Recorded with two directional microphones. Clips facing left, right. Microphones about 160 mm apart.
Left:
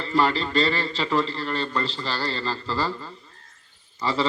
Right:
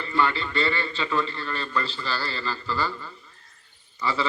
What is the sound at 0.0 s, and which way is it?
A man's voice, 30° left (ahead or behind).